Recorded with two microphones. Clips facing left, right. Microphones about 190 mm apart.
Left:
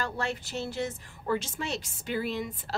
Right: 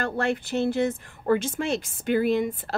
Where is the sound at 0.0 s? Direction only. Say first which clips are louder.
Right 7 dB; 55° right (ahead or behind).